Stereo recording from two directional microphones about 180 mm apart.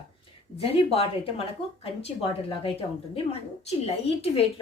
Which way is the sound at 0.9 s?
35° left (ahead or behind).